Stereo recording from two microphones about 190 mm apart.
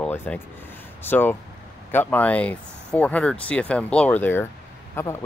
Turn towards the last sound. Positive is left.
turn(degrees=15)  # may be behind; listen again after turning